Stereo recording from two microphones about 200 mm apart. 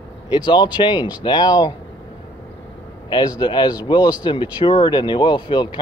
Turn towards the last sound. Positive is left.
turn(degrees=20)  # may be behind; listen again after turning